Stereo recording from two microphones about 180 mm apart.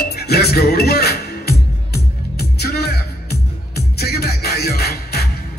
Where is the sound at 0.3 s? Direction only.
60° left (ahead or behind).